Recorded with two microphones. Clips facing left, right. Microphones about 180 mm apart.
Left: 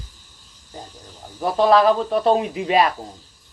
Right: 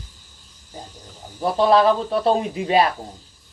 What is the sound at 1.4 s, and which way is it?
Speech, 30° right (ahead or behind).